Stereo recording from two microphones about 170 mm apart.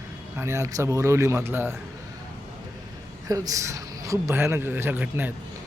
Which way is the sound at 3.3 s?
20° right (ahead or behind).